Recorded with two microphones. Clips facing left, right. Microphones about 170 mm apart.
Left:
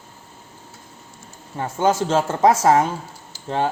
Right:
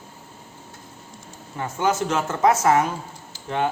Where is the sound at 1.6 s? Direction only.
30° left (ahead or behind).